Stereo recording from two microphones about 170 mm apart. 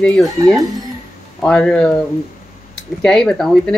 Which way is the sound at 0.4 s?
20° right (ahead or behind).